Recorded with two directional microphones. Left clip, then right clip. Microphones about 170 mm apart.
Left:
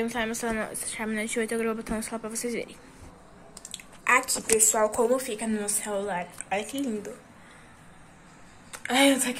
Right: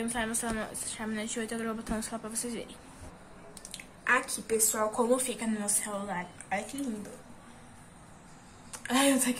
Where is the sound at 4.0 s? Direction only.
20° left (ahead or behind).